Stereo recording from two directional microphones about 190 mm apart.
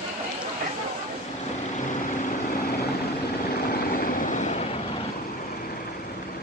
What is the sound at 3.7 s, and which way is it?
Train, 45° left (ahead or behind).